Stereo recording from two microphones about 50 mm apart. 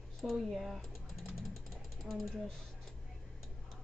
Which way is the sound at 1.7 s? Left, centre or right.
Centre.